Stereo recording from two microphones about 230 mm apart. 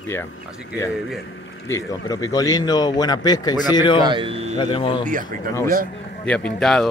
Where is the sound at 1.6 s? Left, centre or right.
Centre.